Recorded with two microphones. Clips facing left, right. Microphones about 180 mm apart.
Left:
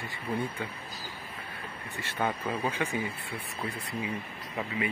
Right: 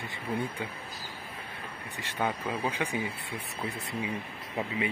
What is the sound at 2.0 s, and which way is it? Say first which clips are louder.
Speech: even; 15° right (ahead or behind).